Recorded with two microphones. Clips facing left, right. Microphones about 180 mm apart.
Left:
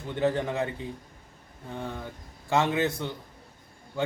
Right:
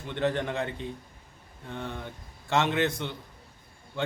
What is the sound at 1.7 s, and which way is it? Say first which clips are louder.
Speech: left 1 dB; 5° left (ahead or behind).